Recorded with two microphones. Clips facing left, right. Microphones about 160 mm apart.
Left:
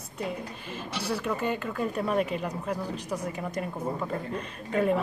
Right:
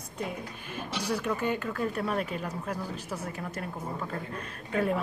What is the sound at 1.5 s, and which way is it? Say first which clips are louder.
Speech: left 1 dB; centre (ahead or behind).